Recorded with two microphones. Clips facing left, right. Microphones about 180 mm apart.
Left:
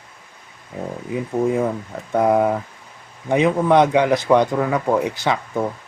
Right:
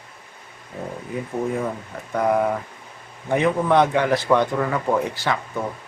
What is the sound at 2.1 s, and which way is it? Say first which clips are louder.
A man's voice: left 4 dB; 25° left (ahead or behind).